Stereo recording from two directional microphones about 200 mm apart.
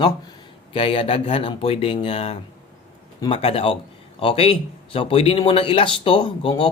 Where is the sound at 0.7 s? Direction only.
25° left (ahead or behind).